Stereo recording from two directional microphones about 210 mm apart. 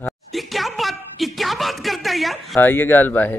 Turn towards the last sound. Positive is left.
turn(degrees=10)  # may be behind; listen again after turning